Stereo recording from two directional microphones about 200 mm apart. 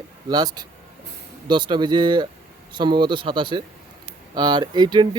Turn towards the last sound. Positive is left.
turn(degrees=-20)  # may be behind; listen again after turning